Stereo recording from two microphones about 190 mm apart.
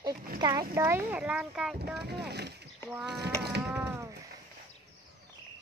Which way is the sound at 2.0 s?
60° right (ahead or behind).